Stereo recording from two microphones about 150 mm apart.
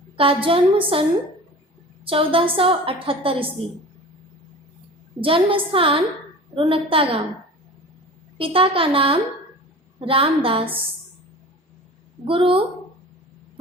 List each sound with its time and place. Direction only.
0.2 s a woman's voice: 35° right (ahead or behind)
2.0 s a woman's voice: 35° right (ahead or behind)
5.2 s a woman's voice: 35° right (ahead or behind)
8.4 s a woman's voice: 35° right (ahead or behind)
12.2 s a woman's voice: 35° right (ahead or behind)